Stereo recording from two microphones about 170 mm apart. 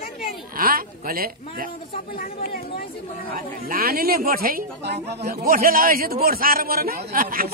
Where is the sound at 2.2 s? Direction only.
60° left (ahead or behind).